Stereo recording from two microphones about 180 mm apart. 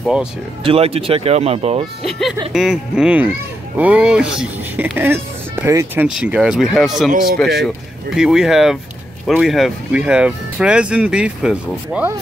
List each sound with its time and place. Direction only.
0.0 s speech: 5° right (ahead or behind)
0.7 s speech: 35° right (ahead or behind)
2.0 s speech: centre (ahead or behind)